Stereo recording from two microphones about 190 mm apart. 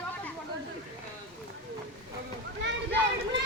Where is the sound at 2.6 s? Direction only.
70° right (ahead or behind).